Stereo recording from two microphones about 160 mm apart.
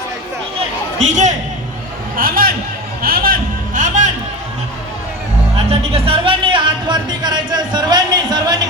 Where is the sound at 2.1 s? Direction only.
65° right (ahead or behind).